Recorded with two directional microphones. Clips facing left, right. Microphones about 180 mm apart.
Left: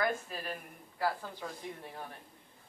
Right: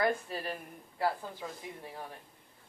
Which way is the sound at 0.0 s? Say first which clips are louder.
Right 3 dB; 30° right (ahead or behind).